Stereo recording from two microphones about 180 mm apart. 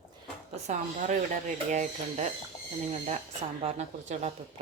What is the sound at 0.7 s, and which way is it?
Speech, 45° right (ahead or behind).